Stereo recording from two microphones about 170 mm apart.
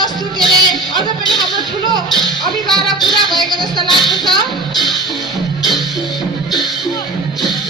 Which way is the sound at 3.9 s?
25° right (ahead or behind).